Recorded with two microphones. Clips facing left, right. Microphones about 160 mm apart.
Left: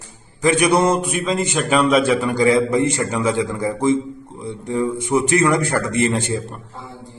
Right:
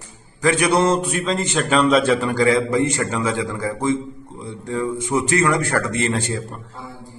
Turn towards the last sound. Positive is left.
turn(degrees=20)  # may be behind; listen again after turning